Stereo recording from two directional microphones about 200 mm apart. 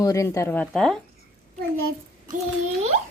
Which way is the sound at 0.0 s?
15° left (ahead or behind).